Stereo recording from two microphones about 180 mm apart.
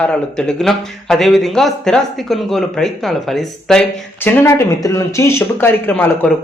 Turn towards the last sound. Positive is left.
turn(degrees=10)  # may be behind; listen again after turning